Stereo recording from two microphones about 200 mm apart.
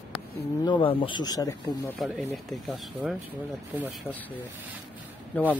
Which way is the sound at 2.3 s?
Centre (ahead or behind).